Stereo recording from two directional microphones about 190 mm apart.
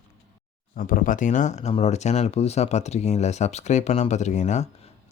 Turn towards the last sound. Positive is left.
turn(degrees=40)  # may be behind; listen again after turning